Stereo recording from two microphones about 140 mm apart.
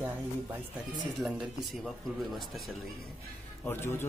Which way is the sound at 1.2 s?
Centre (ahead or behind).